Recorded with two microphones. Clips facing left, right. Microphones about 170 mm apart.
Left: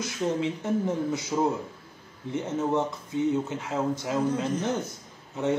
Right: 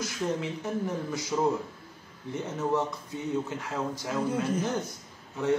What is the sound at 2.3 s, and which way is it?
Speech, 20° left (ahead or behind).